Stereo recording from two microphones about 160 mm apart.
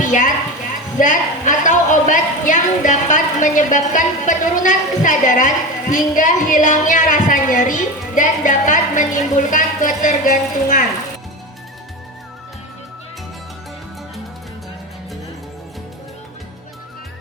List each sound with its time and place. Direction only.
0.0 s a woman's voice: 55° left (ahead or behind)